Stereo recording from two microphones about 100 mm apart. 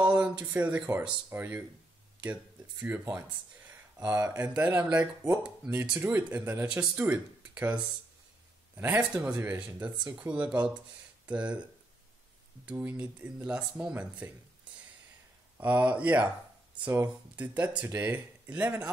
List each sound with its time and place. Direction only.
0.0 s a sound: 15° right (ahead or behind)
1.3 s speech: 20° right (ahead or behind)
2.8 s speech: 20° right (ahead or behind)
12.6 s speech: 20° right (ahead or behind)